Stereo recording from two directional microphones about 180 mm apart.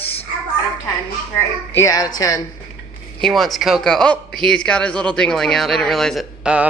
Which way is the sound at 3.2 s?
Centre (ahead or behind).